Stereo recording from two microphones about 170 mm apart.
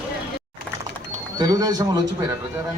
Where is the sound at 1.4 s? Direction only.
20° right (ahead or behind).